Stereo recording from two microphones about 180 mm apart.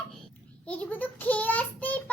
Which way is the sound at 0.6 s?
5° left (ahead or behind).